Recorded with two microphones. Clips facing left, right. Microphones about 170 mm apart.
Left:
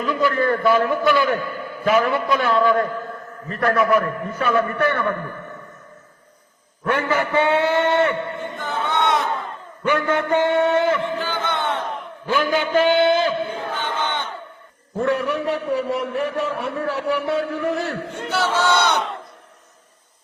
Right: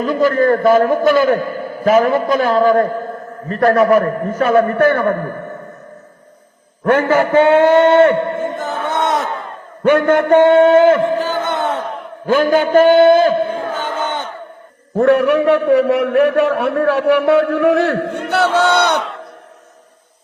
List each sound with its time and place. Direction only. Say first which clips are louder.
0.0 s a man's voice: right 6 dB; 45° right (ahead or behind)
6.8 s a man's voice: right 8 dB; 50° right (ahead or behind)
14.9 s a man's voice: right 10 dB; 65° right (ahead or behind)